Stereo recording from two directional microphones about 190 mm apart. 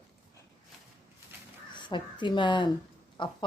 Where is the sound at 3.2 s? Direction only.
25° left (ahead or behind).